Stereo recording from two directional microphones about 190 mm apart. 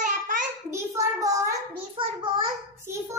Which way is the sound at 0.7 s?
15° right (ahead or behind).